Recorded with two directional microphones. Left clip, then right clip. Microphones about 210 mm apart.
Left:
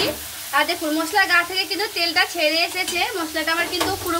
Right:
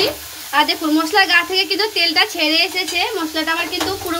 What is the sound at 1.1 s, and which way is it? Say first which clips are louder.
A woman's voice: right 3 dB; 40° right (ahead or behind).